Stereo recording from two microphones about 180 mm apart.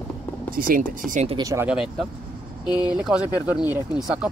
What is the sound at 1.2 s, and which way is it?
Speech, 25° right (ahead or behind).